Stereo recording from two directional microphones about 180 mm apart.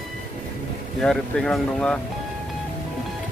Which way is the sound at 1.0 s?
5° left (ahead or behind).